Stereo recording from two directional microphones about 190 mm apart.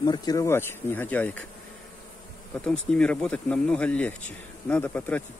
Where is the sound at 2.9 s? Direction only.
5° left (ahead or behind).